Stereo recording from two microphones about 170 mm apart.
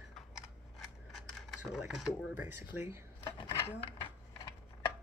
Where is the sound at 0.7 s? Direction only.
Centre (ahead or behind).